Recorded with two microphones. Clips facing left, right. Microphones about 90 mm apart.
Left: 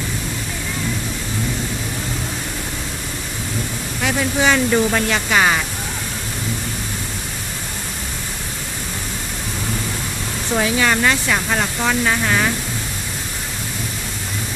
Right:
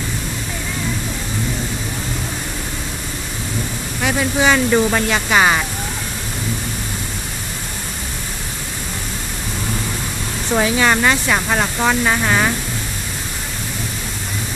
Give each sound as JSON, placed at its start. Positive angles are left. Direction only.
{"t": 4.0, "sound": "speech", "side_deg": -15}
{"t": 10.6, "sound": "speech", "side_deg": -30}